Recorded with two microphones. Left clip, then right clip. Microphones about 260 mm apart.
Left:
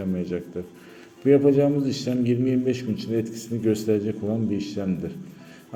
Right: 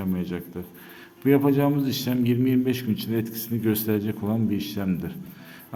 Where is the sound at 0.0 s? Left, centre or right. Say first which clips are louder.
Left 2 dB; centre.